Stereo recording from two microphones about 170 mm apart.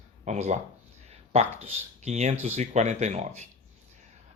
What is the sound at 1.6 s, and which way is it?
Speech, 40° right (ahead or behind).